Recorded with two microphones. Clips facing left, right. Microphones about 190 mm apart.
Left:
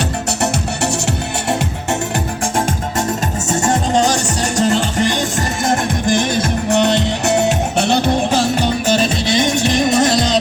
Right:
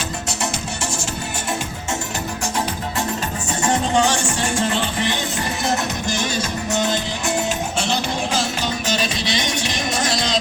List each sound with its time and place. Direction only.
3.5 s music: 40° left (ahead or behind)
6.7 s music: 65° left (ahead or behind); by 9.6 s 50° left (ahead or behind)